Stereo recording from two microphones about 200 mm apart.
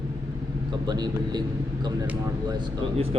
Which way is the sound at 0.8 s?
20° right (ahead or behind).